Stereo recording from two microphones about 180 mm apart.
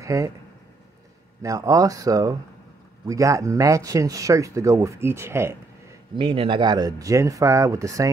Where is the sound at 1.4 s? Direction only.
20° right (ahead or behind).